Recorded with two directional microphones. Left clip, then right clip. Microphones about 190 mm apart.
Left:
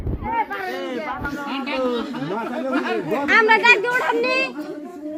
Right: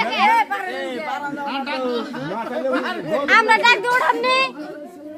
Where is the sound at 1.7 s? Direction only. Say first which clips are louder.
Even; 30° right (ahead or behind).